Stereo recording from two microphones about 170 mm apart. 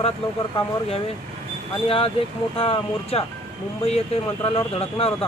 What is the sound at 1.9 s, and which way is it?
Speech, 35° left (ahead or behind).